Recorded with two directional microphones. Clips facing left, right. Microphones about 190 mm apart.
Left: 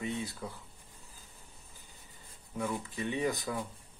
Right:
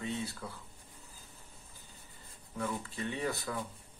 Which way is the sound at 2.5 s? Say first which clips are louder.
Left 2 dB; 15° left (ahead or behind).